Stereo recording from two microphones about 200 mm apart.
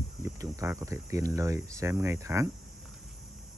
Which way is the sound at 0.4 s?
15° right (ahead or behind).